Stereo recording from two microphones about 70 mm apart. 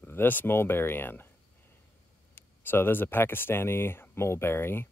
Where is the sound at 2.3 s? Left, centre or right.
Left.